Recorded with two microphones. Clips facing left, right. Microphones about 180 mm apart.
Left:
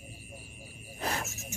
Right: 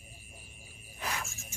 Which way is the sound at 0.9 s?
40° left (ahead or behind).